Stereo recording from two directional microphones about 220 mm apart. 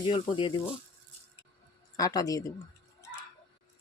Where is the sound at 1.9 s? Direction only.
15° left (ahead or behind).